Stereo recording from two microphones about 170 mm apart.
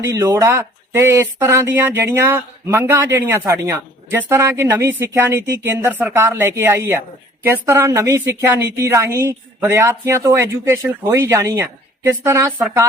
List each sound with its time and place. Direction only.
0.0 s speech: 15° right (ahead or behind)